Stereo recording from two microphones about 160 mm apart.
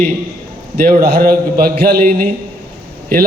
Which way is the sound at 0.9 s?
65° right (ahead or behind).